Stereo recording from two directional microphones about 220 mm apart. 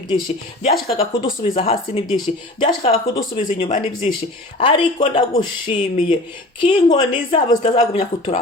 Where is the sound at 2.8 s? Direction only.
40° left (ahead or behind).